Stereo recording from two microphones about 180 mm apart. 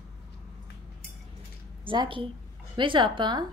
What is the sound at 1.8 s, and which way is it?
A woman's voice, 25° right (ahead or behind).